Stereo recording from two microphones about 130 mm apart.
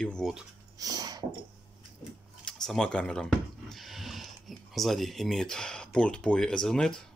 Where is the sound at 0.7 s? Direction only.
30° right (ahead or behind).